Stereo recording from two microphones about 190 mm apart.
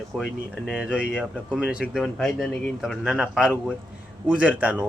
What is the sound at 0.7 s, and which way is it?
A man's voice, 5° right (ahead or behind).